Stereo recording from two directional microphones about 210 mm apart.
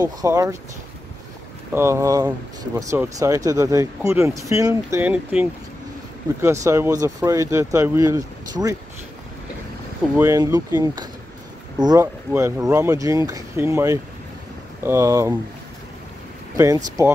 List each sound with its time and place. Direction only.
0.0 s speech: 15° right (ahead or behind)
1.7 s speech: 10° right (ahead or behind)
10.1 s speech: 15° right (ahead or behind)
16.5 s speech: 15° right (ahead or behind)